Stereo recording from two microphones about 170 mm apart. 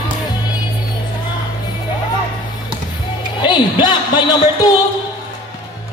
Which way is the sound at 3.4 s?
25° left (ahead or behind).